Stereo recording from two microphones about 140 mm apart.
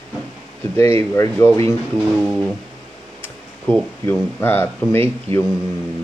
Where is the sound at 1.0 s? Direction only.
20° left (ahead or behind).